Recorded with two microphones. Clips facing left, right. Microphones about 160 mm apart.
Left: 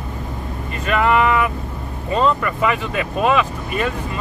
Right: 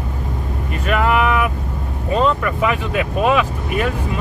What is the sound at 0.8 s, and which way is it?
Speech, 5° right (ahead or behind).